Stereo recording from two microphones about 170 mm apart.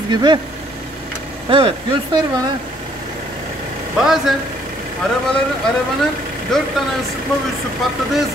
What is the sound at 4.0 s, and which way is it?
Speech, 5° right (ahead or behind).